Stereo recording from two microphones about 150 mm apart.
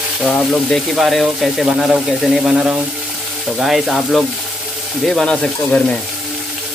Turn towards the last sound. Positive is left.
turn(degrees=5)  # may be behind; listen again after turning